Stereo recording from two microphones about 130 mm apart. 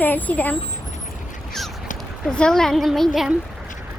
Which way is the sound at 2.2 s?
5° left (ahead or behind).